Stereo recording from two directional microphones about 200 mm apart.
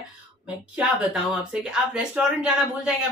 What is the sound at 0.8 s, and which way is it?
Speech, centre (ahead or behind).